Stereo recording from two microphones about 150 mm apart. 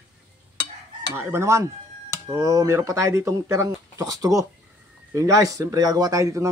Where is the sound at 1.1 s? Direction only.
15° right (ahead or behind).